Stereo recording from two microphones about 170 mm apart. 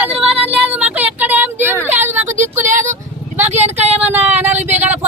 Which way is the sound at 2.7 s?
45° right (ahead or behind).